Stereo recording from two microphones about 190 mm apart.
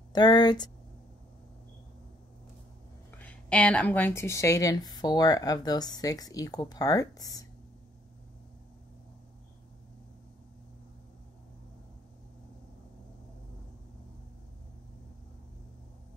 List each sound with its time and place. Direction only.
0.1 s a woman's voice: 20° left (ahead or behind)
3.2 s a woman's voice: 10° left (ahead or behind)